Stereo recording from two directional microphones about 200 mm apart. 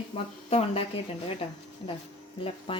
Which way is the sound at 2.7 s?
30° left (ahead or behind).